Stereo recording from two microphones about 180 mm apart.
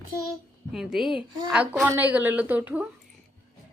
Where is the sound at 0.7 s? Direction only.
Centre (ahead or behind).